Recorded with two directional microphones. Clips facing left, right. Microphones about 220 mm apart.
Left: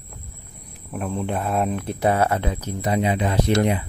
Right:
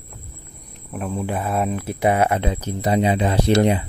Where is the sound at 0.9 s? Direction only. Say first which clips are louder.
Even; 5° right (ahead or behind); by 3.9 s 30° right (ahead or behind).